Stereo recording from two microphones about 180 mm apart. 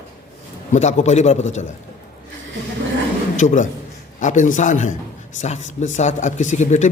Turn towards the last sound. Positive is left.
turn(degrees=40)  # may be behind; listen again after turning